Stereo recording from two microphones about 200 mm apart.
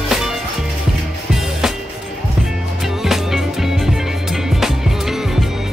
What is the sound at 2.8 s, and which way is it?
Music, centre (ahead or behind).